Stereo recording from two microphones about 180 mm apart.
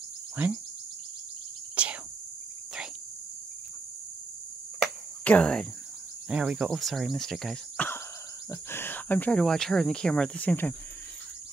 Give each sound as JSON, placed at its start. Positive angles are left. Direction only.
{"t": 0.4, "sound": "speech", "side_deg": -10}
{"t": 1.8, "sound": "cricket", "side_deg": -5}
{"t": 5.2, "sound": "speech", "side_deg": 5}
{"t": 6.2, "sound": "speech", "side_deg": -5}